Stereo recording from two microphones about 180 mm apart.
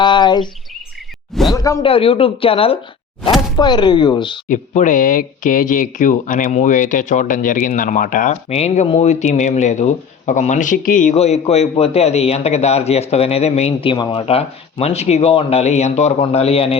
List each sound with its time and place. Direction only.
0.0 s bird: 25° left (ahead or behind)
1.5 s a sound: 20° left (ahead or behind)
1.8 s speech: 30° left (ahead or behind)
4.4 s speech: 45° left (ahead or behind)